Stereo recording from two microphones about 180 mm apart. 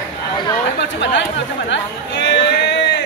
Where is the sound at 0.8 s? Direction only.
80° left.